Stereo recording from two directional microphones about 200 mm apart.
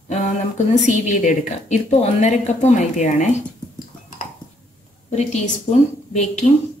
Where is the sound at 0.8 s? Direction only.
40° left (ahead or behind).